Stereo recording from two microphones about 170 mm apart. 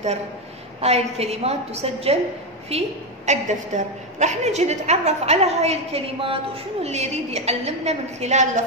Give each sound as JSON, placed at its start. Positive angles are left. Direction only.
{"t": 0.7, "sound": "a woman's voice", "side_deg": -40}